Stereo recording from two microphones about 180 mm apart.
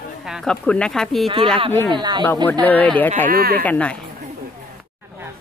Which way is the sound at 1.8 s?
25° right (ahead or behind).